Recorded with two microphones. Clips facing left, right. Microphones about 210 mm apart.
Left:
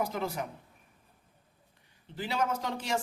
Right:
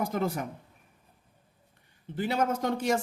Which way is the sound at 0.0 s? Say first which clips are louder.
Right 3 dB; 50° right (ahead or behind).